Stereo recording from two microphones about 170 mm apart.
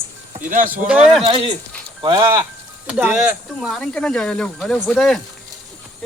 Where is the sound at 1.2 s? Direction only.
30° right (ahead or behind).